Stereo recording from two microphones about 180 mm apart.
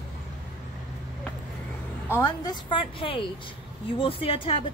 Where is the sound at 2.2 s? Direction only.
25° left (ahead or behind).